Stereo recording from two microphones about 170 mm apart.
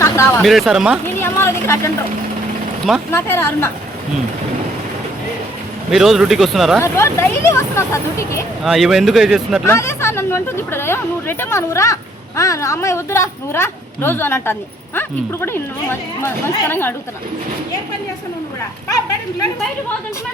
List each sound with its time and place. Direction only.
0.0 s a sound: 15° left (ahead or behind)
0.4 s speech: centre (ahead or behind)
1.0 s a woman's voice: 15° left (ahead or behind)
3.1 s speech: 15° left (ahead or behind)
5.9 s speech: centre (ahead or behind)
6.8 s speech: 15° left (ahead or behind)
8.6 s speech: centre (ahead or behind)
9.6 s speech: 15° left (ahead or behind)